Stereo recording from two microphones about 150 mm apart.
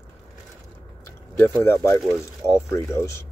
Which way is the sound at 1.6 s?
20° left (ahead or behind).